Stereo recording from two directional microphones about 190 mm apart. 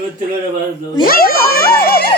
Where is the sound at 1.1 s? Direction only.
50° left (ahead or behind).